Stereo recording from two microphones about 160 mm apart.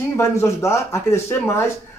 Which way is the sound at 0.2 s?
20° left (ahead or behind).